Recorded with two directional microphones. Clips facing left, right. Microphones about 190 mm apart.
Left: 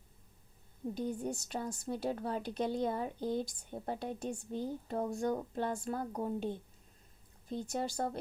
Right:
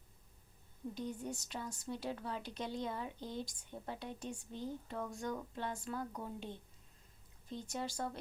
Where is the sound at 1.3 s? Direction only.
55° left (ahead or behind).